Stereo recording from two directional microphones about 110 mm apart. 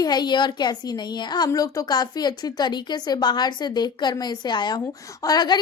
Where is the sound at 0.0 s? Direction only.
40° left (ahead or behind).